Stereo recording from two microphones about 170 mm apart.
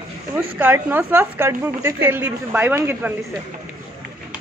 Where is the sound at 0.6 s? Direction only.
10° right (ahead or behind).